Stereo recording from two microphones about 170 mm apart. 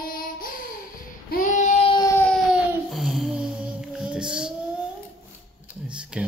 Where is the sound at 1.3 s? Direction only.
50° left (ahead or behind).